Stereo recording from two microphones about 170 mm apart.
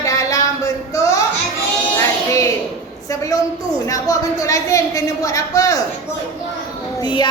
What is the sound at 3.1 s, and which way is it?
Speech, 20° left (ahead or behind).